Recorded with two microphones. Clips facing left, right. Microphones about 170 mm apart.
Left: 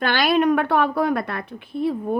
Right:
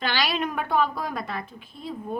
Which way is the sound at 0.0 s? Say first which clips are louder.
Left 8 dB; 55° left (ahead or behind).